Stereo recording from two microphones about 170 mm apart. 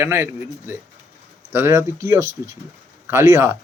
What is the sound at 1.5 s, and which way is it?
A man's voice, 15° right (ahead or behind).